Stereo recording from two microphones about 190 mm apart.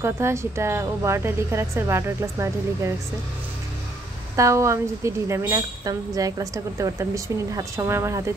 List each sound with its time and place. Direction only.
0.0 s a woman's voice: 15° right (ahead or behind)
4.4 s a woman's voice: 15° right (ahead or behind)